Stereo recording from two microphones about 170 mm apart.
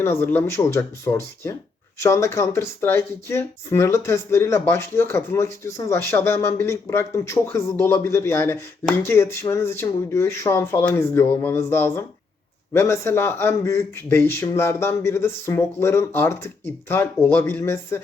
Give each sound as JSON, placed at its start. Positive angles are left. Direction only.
{"t": 0.0, "sound": "speech", "side_deg": 15}